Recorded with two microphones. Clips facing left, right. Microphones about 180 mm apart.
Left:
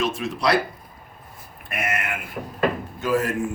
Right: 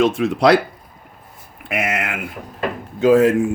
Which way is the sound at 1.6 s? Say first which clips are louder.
Right 6 dB; 90° right.